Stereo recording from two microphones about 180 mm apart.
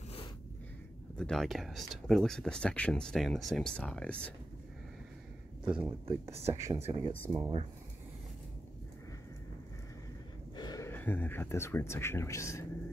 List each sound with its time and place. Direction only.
1.1 s speech: 5° left (ahead or behind)
5.7 s speech: 10° right (ahead or behind)
6.7 s speech: 35° right (ahead or behind)
7.2 s speech: 15° right (ahead or behind)
10.5 s a sound: 20° left (ahead or behind)
10.9 s speech: 10° left (ahead or behind)